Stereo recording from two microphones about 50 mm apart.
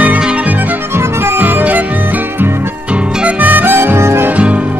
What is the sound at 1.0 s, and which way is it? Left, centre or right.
Music, right.